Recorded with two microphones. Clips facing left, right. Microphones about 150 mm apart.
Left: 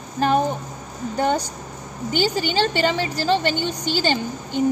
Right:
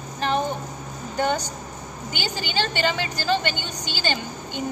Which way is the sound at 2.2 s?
35° left (ahead or behind).